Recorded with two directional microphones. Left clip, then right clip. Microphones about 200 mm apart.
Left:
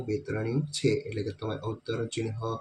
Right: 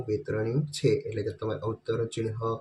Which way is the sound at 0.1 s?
5° right (ahead or behind).